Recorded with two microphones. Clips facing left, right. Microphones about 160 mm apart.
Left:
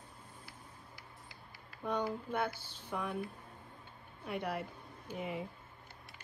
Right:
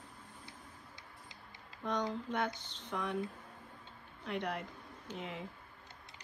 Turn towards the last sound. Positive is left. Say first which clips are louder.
# left 3 dB
turn(degrees=5)  # may be behind; listen again after turning